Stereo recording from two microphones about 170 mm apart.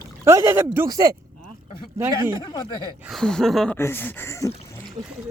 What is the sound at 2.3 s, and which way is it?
Speech, 25° left (ahead or behind).